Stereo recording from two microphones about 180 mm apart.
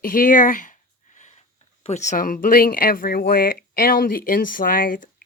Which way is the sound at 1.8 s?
40° left (ahead or behind).